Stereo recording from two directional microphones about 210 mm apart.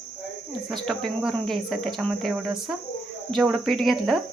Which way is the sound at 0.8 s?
Centre (ahead or behind).